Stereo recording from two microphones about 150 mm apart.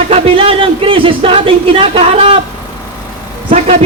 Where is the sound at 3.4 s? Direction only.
40° right (ahead or behind).